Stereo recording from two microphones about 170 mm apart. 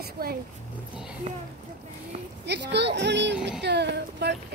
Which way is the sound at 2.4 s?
90° right.